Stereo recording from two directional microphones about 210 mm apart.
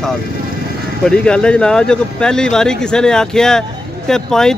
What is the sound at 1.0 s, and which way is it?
Speech, 5° left (ahead or behind).